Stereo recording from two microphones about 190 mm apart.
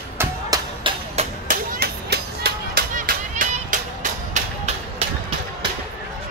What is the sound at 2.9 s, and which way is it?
Music, 45° right (ahead or behind).